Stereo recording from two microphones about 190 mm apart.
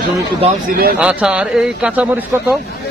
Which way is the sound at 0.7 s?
50° right (ahead or behind).